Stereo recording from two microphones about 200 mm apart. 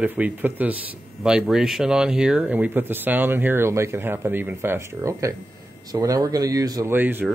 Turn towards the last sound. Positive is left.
turn(degrees=-10)  # may be behind; listen again after turning